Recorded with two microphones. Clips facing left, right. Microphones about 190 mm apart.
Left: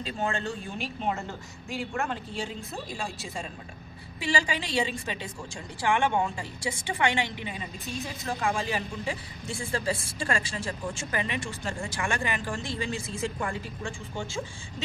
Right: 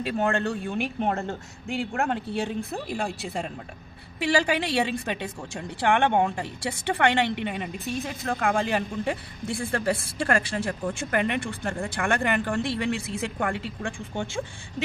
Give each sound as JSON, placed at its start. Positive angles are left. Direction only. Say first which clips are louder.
{"t": 0.0, "sound": "a woman's voice", "louder": "right 6 dB", "side_deg": -60}